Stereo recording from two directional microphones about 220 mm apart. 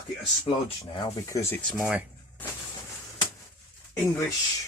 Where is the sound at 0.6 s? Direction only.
20° left (ahead or behind); by 2.0 s 5° right (ahead or behind).